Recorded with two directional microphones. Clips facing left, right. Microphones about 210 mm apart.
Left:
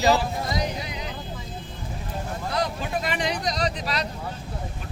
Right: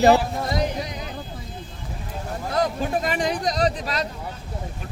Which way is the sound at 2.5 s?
45° right (ahead or behind).